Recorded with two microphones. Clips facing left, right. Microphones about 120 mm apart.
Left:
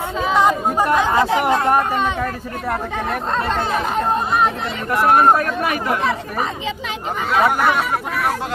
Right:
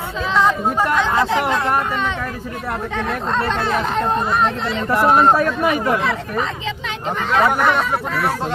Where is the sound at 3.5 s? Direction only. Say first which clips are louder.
Even; 10° left (ahead or behind).